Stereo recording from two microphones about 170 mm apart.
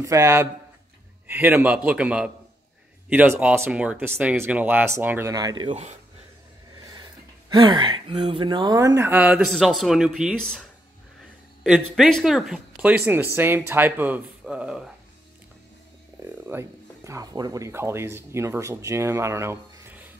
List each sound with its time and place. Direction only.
0.0 s speech: 20° right (ahead or behind)
6.8 s speech: 20° right (ahead or behind); by 10.6 s 5° left (ahead or behind)
11.6 s speech: centre (ahead or behind)
16.4 s speech: 15° right (ahead or behind)